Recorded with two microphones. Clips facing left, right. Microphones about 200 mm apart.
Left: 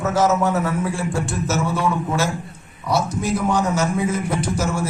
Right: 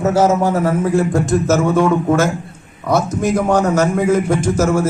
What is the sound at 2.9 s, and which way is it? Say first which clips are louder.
Speech: right 5 dB; 65° right (ahead or behind).